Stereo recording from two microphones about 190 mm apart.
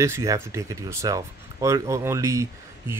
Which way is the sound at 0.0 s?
15° right (ahead or behind).